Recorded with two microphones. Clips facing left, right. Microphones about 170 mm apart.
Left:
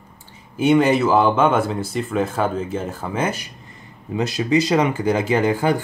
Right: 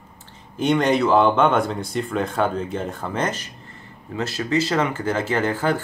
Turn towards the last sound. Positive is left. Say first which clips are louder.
# left 3 dB
turn(degrees=15)  # may be behind; listen again after turning